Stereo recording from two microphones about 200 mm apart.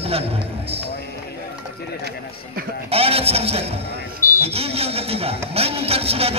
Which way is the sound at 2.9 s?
30° right (ahead or behind).